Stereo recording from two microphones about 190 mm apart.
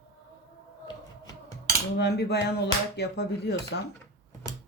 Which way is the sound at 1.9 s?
60° left (ahead or behind).